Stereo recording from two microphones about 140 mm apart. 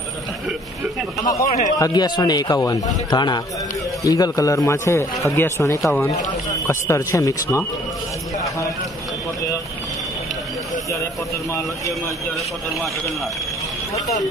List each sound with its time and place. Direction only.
1.2 s a man's voice: 25° left (ahead or behind)